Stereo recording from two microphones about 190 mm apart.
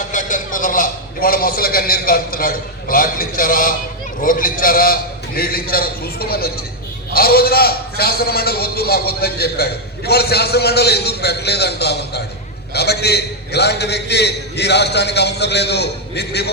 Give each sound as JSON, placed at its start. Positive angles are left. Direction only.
{"t": 0.1, "sound": "a man's voice", "side_deg": 40}